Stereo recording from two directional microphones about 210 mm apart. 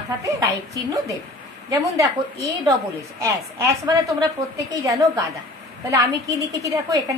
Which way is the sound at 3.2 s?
15° right (ahead or behind).